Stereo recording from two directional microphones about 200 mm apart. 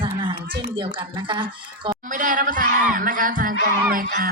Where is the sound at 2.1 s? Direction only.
40° right (ahead or behind).